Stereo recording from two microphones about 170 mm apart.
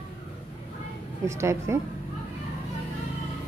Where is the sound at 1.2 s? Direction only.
15° right (ahead or behind).